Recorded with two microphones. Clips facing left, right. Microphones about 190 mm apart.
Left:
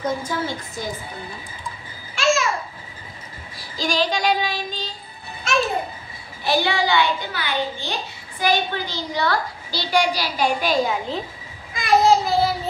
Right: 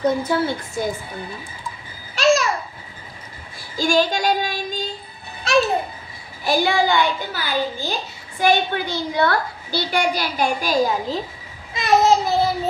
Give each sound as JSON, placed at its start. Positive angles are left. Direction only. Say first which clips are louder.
{"t": 0.0, "sound": "a woman's voice", "louder": "right 5 dB", "side_deg": -65}
{"t": 2.1, "sound": "babbling", "louder": "right 4 dB", "side_deg": -40}
{"t": 3.5, "sound": "child singing", "louder": "right 5 dB", "side_deg": -50}
{"t": 6.4, "sound": "a child's voice", "louder": "right 2 dB", "side_deg": -45}
{"t": 8.4, "sound": "a woman's voice", "louder": "right 3 dB", "side_deg": -55}
{"t": 11.7, "sound": "a child's voice", "louder": "even", "side_deg": -20}